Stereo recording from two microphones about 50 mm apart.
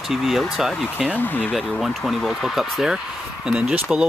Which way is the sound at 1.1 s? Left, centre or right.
Left.